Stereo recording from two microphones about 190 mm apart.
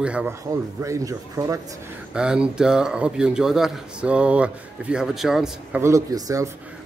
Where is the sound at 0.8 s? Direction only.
15° right (ahead or behind).